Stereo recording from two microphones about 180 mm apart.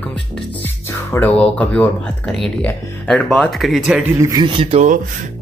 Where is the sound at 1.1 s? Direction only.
10° left (ahead or behind).